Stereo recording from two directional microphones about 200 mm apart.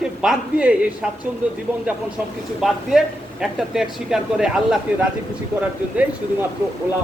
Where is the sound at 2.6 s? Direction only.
Centre (ahead or behind).